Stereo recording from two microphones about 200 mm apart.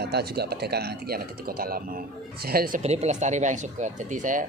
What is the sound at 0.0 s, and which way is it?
Speech, 55° right (ahead or behind).